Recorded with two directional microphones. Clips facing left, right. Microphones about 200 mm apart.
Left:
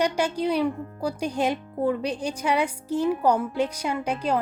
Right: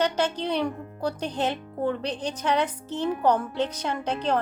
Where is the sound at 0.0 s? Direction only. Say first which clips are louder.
Left 1 dB; 10° left (ahead or behind).